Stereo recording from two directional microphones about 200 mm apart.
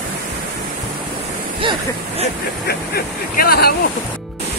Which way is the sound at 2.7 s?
50° left (ahead or behind).